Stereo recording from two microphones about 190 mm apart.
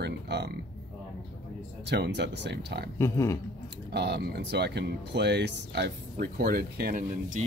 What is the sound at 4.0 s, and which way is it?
Speech, 65° right (ahead or behind).